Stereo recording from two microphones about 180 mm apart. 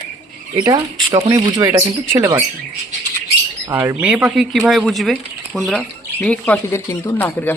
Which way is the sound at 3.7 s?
10° right (ahead or behind).